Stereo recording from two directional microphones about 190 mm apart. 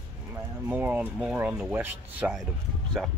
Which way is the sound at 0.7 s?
10° right (ahead or behind).